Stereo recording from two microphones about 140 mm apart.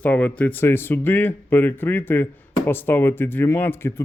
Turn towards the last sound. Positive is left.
turn(degrees=15)  # may be behind; listen again after turning